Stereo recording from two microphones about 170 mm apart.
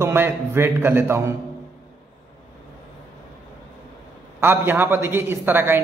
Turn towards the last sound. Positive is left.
turn(degrees=-15)  # may be behind; listen again after turning